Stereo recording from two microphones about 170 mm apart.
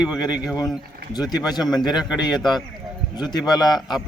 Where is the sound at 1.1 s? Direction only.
25° left (ahead or behind).